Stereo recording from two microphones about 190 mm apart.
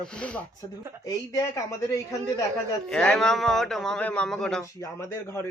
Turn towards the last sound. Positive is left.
turn(degrees=15)  # may be behind; listen again after turning